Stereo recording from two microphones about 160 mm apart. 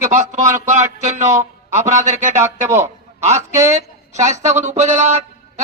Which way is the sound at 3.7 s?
45° right (ahead or behind).